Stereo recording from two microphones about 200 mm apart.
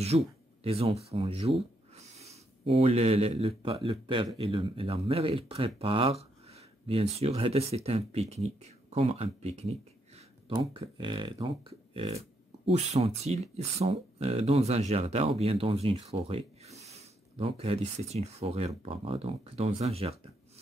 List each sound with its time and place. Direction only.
0.1 s a man's voice: 30° right (ahead or behind)